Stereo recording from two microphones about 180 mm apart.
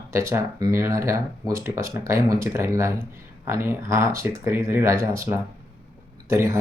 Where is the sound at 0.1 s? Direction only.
15° right (ahead or behind).